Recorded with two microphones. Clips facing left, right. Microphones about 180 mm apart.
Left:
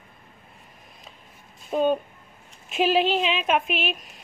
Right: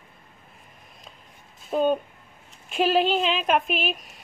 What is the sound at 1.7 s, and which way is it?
A woman's voice, centre (ahead or behind).